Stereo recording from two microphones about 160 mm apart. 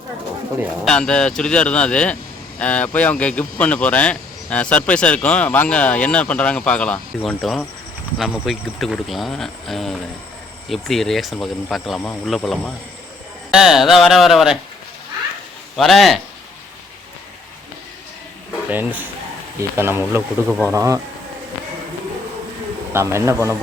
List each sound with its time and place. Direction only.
0.9 s speech: 5° left (ahead or behind)
15.7 s speech: centre (ahead or behind)
18.7 s speech: 10° right (ahead or behind)
22.9 s speech: 15° right (ahead or behind)